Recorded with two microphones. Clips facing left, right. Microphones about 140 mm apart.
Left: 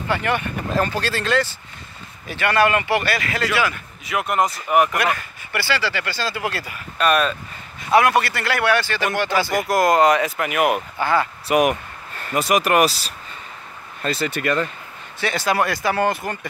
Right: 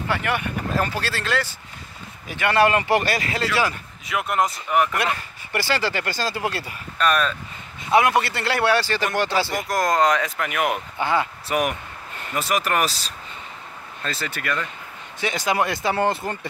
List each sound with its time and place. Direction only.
0.1 s speech: 5° right (ahead or behind)
2.2 s speech: 15° right (ahead or behind)
2.5 s speech: 30° right (ahead or behind)
4.0 s speech: centre (ahead or behind)
4.6 s speech: 15° left (ahead or behind)
4.9 s speech: 25° right (ahead or behind)
5.6 s speech: 45° right (ahead or behind)
7.0 s speech: 10° left (ahead or behind)
7.9 s speech: 20° right (ahead or behind); by 9.5 s 35° right (ahead or behind)
9.6 s speech: 10° left (ahead or behind)
11.0 s speech: 20° right (ahead or behind)
11.4 s speech: 20° left (ahead or behind)
15.1 s speech: 15° right (ahead or behind)